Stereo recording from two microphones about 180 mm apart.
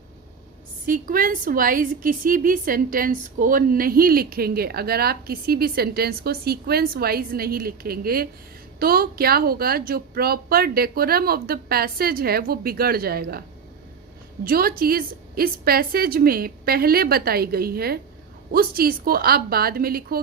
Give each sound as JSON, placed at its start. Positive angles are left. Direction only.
{"t": 0.9, "sound": "a woman's voice", "side_deg": -50}
{"t": 14.4, "sound": "a woman's voice", "side_deg": -55}